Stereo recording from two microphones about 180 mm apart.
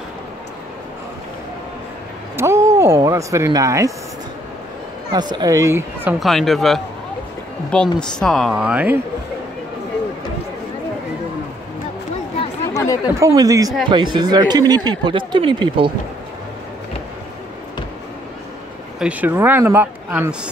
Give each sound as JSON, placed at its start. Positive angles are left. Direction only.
{"t": 2.3, "sound": "speech", "side_deg": -15}
{"t": 5.1, "sound": "speech", "side_deg": -25}
{"t": 6.1, "sound": "speech", "side_deg": 0}
{"t": 12.7, "sound": "chatter", "side_deg": 15}
{"t": 13.0, "sound": "speech", "side_deg": -15}
{"t": 18.9, "sound": "speech", "side_deg": -10}